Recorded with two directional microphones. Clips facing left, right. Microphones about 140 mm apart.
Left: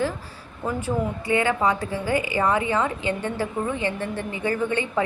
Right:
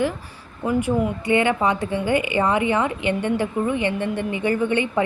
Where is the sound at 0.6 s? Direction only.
15° right (ahead or behind).